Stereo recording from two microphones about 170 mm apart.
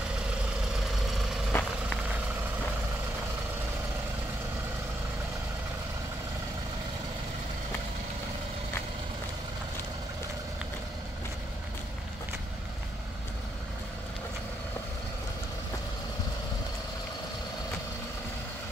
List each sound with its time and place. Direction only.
1.5 s vehicle: 10° left (ahead or behind)